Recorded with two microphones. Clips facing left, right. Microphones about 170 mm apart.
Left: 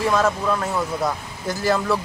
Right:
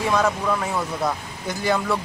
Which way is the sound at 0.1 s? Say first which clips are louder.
Left 1 dB; centre (ahead or behind).